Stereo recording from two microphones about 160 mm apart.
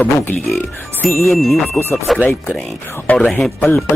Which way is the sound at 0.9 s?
15° left (ahead or behind).